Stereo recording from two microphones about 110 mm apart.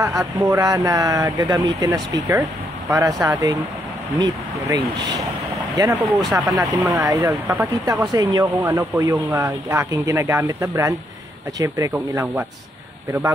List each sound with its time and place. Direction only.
0.0 s speech: 25° right (ahead or behind)
7.8 s speech: 30° right (ahead or behind)
11.9 s speech: 15° right (ahead or behind)